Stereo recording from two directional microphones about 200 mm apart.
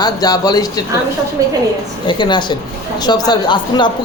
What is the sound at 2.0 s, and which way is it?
A man's voice, 25° left (ahead or behind).